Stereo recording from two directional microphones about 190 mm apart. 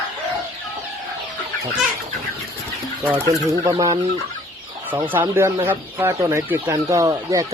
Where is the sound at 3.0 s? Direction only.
10° right (ahead or behind).